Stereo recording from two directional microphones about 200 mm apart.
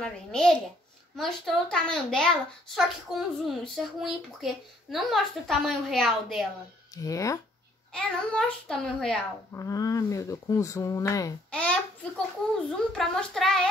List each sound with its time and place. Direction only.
0.0 s a child's voice: 5° left (ahead or behind)
7.0 s speech: 15° left (ahead or behind)
7.9 s a child's voice: 5° left (ahead or behind)
9.6 s speech: 15° left (ahead or behind)
11.5 s a child's voice: 5° left (ahead or behind)
12.9 s a child's voice: centre (ahead or behind)